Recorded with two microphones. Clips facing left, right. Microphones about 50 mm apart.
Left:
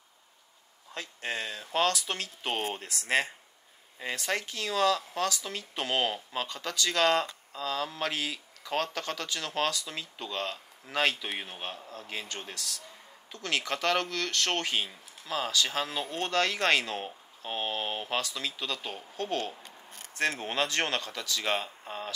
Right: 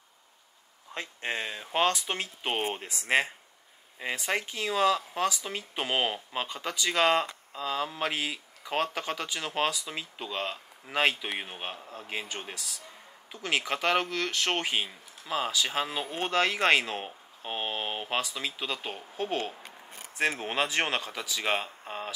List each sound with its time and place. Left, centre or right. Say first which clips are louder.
0.9 s speech: right 2 dB; right